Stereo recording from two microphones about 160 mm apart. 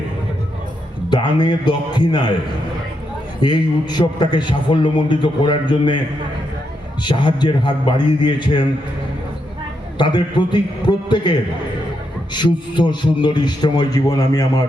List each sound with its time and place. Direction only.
1.1 s a man's voice: 30° left (ahead or behind)
3.4 s a man's voice: 25° left (ahead or behind)
7.0 s a man's voice: 30° left (ahead or behind)
10.0 s a man's voice: 30° left (ahead or behind)